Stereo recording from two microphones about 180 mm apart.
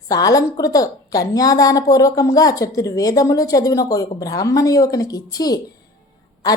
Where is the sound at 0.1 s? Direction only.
20° left (ahead or behind).